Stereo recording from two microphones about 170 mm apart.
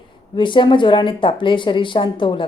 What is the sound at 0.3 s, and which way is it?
A woman's voice, 30° left (ahead or behind).